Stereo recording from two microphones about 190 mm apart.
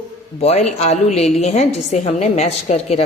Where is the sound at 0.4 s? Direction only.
35° left (ahead or behind).